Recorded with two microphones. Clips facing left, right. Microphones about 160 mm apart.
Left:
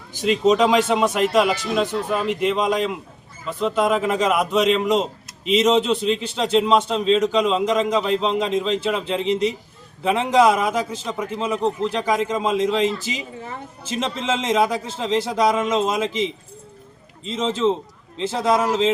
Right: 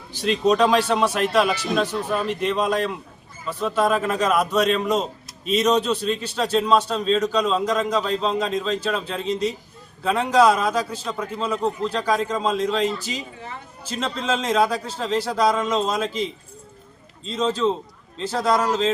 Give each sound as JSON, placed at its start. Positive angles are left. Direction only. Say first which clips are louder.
{"t": 0.2, "sound": "a man's voice", "louder": "left 2 dB", "side_deg": 20}